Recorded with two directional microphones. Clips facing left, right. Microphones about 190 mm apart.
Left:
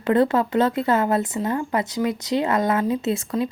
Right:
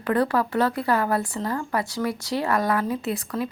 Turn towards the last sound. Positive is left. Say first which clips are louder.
# left 4 dB
turn(degrees=25)  # may be behind; listen again after turning